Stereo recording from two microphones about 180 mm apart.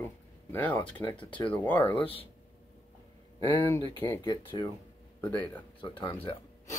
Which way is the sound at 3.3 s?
15° left (ahead or behind).